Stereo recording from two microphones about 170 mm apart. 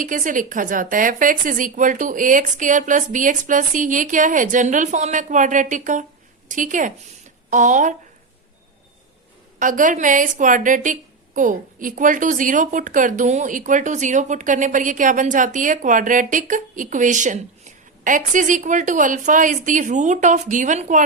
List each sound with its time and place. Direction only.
0.0 s a woman's voice: 50° right (ahead or behind)
9.6 s a woman's voice: 50° right (ahead or behind)